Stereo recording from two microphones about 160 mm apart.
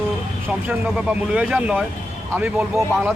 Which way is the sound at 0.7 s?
10° right (ahead or behind).